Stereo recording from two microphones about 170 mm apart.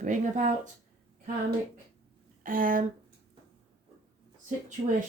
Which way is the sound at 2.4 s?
55° right (ahead or behind).